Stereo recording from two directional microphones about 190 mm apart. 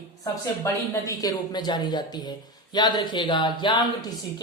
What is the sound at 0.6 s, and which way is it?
A man's voice, 15° left (ahead or behind).